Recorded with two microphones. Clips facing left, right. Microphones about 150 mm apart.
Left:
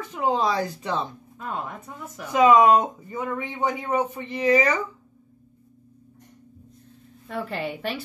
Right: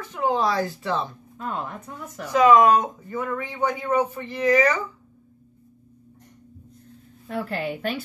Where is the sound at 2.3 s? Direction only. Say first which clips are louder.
Even; 20° left (ahead or behind).